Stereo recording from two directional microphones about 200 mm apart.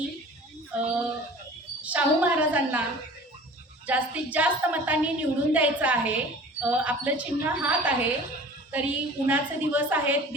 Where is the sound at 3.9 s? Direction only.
10° right (ahead or behind).